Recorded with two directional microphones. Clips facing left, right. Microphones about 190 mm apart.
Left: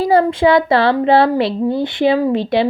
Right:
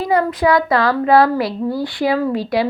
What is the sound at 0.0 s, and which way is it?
Speech, 30° left (ahead or behind).